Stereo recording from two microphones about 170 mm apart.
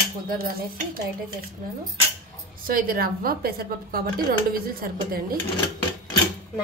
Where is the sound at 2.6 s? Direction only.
60° right (ahead or behind).